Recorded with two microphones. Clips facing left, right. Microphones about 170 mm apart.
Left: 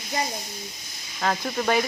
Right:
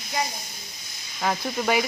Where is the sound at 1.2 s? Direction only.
5° right (ahead or behind).